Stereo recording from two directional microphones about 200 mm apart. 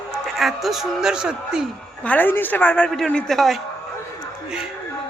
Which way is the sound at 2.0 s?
10° left (ahead or behind).